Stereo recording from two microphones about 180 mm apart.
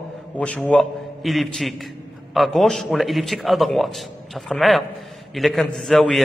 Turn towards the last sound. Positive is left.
turn(degrees=0)  # may be behind; listen again after turning